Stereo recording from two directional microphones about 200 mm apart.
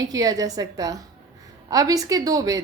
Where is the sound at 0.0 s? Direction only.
20° right (ahead or behind).